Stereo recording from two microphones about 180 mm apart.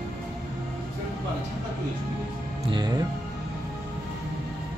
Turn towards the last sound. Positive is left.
turn(degrees=-25)  # may be behind; listen again after turning